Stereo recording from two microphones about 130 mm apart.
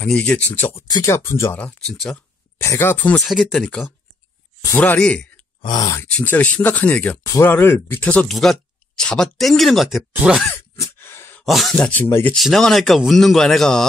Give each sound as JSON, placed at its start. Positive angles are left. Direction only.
{"t": 0.0, "sound": "speech", "side_deg": 10}
{"t": 0.7, "sound": "speech", "side_deg": 25}
{"t": 1.6, "sound": "speech", "side_deg": 10}
{"t": 2.6, "sound": "speech", "side_deg": 20}
{"t": 3.2, "sound": "speech", "side_deg": 0}
{"t": 4.7, "sound": "speech", "side_deg": 10}
{"t": 5.6, "sound": "speech", "side_deg": 35}
{"t": 6.0, "sound": "speech", "side_deg": 10}
{"t": 10.5, "sound": "a sound", "side_deg": 15}
{"t": 11.4, "sound": "speech", "side_deg": 0}
{"t": 12.4, "sound": "speech", "side_deg": 0}